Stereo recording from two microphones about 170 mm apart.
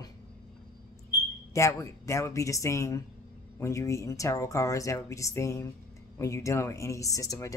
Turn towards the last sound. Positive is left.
turn(degrees=20)  # may be behind; listen again after turning